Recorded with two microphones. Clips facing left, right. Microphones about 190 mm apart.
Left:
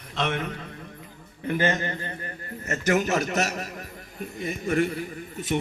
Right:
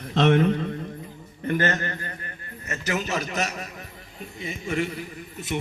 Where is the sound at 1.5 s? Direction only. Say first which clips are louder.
Even; 15° left (ahead or behind).